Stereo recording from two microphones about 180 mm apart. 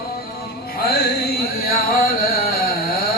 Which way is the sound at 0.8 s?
60° left (ahead or behind).